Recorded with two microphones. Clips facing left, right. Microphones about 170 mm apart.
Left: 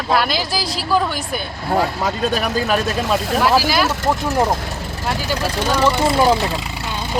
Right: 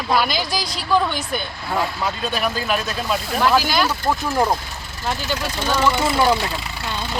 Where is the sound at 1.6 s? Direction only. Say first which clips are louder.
Left 6 dB; 40° left (ahead or behind).